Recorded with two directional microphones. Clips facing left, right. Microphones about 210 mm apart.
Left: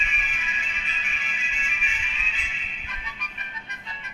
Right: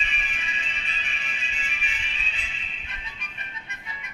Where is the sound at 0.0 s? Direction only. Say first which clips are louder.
Even; 35° right (ahead or behind).